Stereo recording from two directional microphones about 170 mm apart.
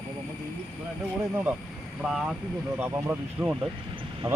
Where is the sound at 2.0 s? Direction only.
5° right (ahead or behind).